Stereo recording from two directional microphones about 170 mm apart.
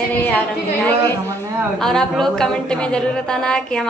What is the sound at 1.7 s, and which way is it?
A woman's voice, 5° left (ahead or behind).